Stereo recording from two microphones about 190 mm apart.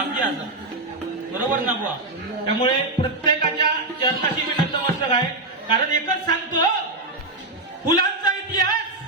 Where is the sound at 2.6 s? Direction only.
20° left (ahead or behind).